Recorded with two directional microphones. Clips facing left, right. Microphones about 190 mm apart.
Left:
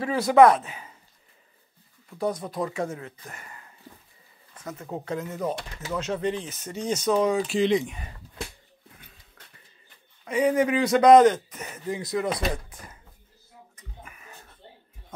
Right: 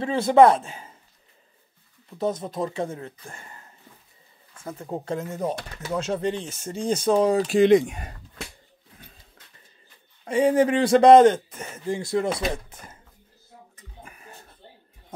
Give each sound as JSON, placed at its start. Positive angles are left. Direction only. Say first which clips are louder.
{"t": 0.0, "sound": "speech", "louder": "right 1 dB", "side_deg": -25}
{"t": 2.0, "sound": "speech", "louder": "right 2 dB", "side_deg": -20}
{"t": 5.0, "sound": "speech", "louder": "right 1 dB", "side_deg": -30}
{"t": 10.2, "sound": "speech", "louder": "right 3 dB", "side_deg": -30}
{"t": 14.0, "sound": "music", "louder": "right 4 dB", "side_deg": -35}